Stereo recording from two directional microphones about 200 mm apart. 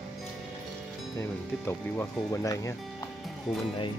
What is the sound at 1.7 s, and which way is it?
Speech, 15° left (ahead or behind).